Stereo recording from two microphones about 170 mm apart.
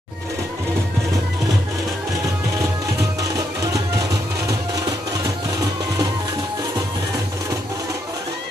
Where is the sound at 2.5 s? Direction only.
20° right (ahead or behind).